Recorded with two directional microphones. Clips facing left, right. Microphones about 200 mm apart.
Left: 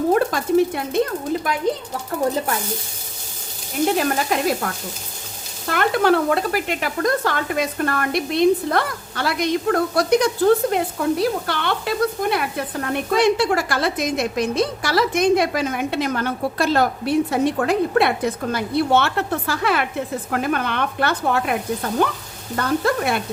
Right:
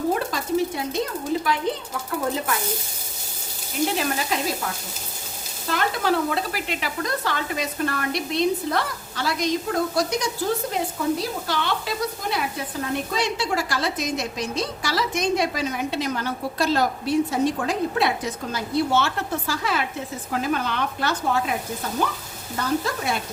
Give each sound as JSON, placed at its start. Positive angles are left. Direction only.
{"t": 0.1, "sound": "stir", "side_deg": 55}
{"t": 3.9, "sound": "frying", "side_deg": 50}
{"t": 5.6, "sound": "speech", "side_deg": 60}